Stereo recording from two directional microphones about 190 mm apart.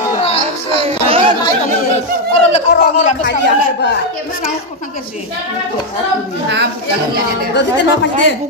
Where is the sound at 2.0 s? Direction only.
35° left (ahead or behind).